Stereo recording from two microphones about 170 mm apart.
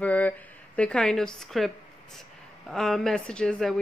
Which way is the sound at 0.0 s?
10° left (ahead or behind).